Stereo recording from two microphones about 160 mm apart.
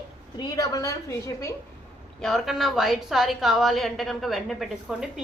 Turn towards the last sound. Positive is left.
turn(degrees=0)  # may be behind; listen again after turning